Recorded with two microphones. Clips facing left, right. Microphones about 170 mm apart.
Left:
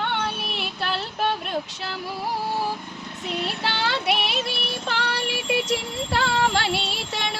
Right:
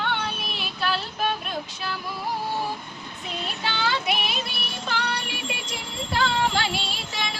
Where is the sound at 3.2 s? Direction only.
80° left.